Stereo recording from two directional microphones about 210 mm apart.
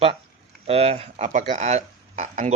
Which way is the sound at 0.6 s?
30° right (ahead or behind).